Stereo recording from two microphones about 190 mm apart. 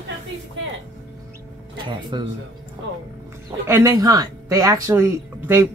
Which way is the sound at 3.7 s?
15° right (ahead or behind).